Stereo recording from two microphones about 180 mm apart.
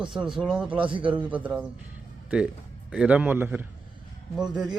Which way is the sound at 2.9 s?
5° right (ahead or behind).